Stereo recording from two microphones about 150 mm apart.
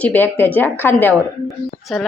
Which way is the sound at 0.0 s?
10° left (ahead or behind).